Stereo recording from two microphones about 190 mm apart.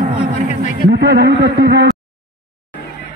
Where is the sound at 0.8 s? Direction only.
60° right (ahead or behind).